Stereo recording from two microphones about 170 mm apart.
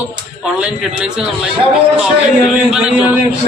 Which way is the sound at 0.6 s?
5° right (ahead or behind).